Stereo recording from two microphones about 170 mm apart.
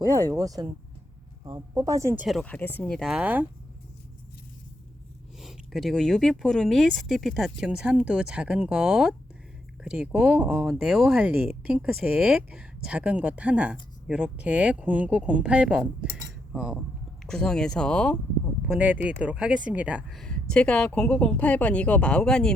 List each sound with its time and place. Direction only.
0.1 s speech: 20° right (ahead or behind)
2.2 s speech: 5° left (ahead or behind)
5.4 s speech: centre (ahead or behind)
16.5 s cutlery: 5° right (ahead or behind)
17.2 s speech: 5° left (ahead or behind)
18.8 s speech: 10° right (ahead or behind)